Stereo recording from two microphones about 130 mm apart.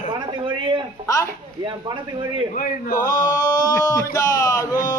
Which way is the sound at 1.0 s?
25° left (ahead or behind).